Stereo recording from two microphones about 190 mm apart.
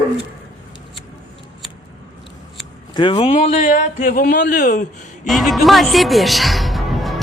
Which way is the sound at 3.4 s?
40° left (ahead or behind).